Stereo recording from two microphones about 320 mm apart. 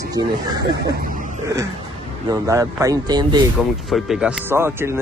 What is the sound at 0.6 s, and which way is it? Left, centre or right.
Speech, right.